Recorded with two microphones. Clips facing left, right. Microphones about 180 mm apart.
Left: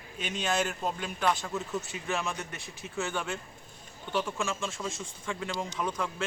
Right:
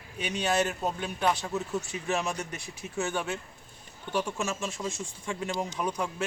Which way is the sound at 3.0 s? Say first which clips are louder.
Right 2 dB; 15° right (ahead or behind).